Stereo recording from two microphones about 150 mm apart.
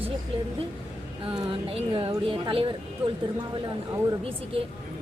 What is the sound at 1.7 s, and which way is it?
Speech, 35° right (ahead or behind).